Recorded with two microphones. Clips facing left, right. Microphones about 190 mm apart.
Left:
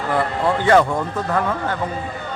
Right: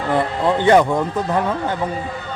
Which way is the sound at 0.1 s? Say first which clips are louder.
Right 2 dB; 20° right (ahead or behind).